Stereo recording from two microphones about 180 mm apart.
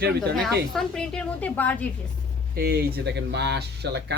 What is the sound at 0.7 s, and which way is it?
A woman's voice, 5° left (ahead or behind).